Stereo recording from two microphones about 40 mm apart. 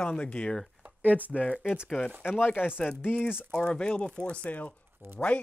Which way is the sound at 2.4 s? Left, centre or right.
Left.